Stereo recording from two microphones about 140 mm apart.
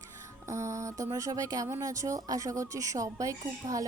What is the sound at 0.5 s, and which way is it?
Speech, 20° right (ahead or behind).